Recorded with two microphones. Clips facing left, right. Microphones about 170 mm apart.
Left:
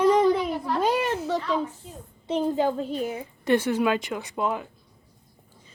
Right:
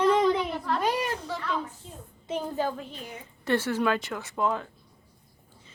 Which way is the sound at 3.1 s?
15° left (ahead or behind).